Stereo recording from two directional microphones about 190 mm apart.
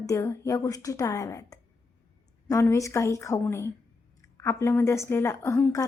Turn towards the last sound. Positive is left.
turn(degrees=15)  # may be behind; listen again after turning